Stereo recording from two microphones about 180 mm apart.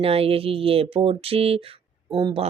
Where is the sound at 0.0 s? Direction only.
30° right (ahead or behind).